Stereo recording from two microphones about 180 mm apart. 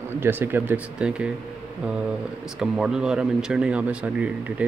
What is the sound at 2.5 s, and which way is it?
Speech, 5° right (ahead or behind).